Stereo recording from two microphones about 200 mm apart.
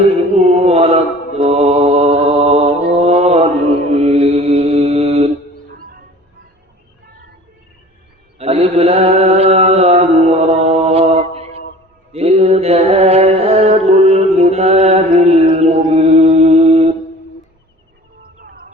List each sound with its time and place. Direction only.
0.3 s mantra: 30° right (ahead or behind)
8.4 s mantra: 30° right (ahead or behind)
18.2 s music: 45° right (ahead or behind)